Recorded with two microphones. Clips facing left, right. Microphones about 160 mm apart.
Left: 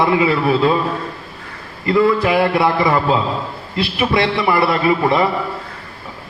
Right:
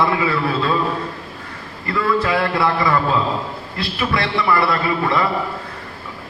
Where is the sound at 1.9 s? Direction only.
20° left (ahead or behind).